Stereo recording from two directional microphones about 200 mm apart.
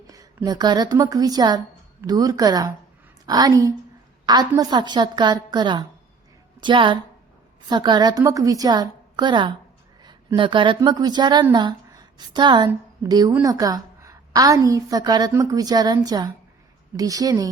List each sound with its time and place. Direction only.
0.1 s a woman's voice: 15° right (ahead or behind)